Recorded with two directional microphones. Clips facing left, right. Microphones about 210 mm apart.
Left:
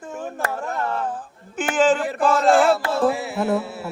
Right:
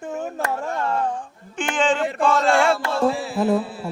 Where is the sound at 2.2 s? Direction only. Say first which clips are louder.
Left 2 dB; 5° left (ahead or behind).